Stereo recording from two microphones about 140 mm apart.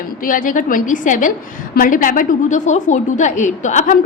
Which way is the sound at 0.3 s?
75° left (ahead or behind).